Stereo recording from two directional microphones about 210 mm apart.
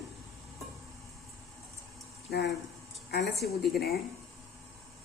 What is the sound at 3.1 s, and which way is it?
Speech, 50° left (ahead or behind).